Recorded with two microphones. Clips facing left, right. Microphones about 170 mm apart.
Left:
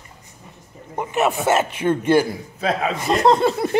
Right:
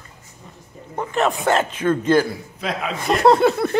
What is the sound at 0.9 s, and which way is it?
Speech, 15° left (ahead or behind).